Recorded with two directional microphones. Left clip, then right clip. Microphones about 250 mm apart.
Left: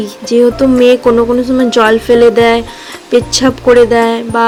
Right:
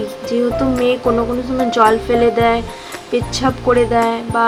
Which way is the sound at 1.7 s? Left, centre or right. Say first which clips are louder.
Left 4 dB; left.